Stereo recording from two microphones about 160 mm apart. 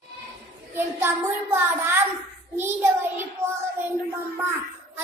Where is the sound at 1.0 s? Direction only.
15° right (ahead or behind).